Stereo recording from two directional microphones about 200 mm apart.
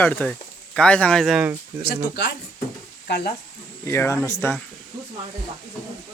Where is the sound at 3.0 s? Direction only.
50° left (ahead or behind).